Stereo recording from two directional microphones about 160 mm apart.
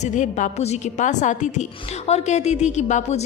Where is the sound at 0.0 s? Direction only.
50° left (ahead or behind).